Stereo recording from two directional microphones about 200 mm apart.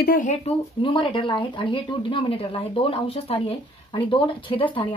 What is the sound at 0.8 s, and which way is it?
A woman's voice, 25° left (ahead or behind).